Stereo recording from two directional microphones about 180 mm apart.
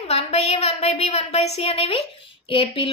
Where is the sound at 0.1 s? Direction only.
35° left (ahead or behind).